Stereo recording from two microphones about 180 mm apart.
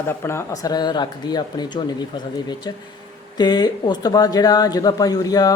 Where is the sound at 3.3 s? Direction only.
25° left (ahead or behind).